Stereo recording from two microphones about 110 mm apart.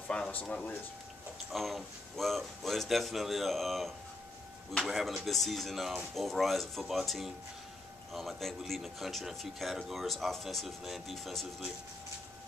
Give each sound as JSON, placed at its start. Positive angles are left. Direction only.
{"t": 0.1, "sound": "speech", "side_deg": 10}
{"t": 1.5, "sound": "speech", "side_deg": 0}